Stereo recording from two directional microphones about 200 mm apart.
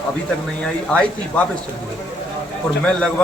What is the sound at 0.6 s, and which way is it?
Speech, 5° left (ahead or behind).